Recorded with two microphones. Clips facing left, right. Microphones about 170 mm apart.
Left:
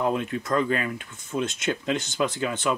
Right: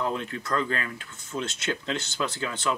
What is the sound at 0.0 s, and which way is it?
Speech, 10° left (ahead or behind).